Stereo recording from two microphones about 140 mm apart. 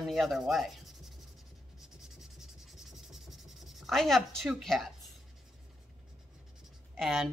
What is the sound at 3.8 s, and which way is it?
Speech, centre (ahead or behind).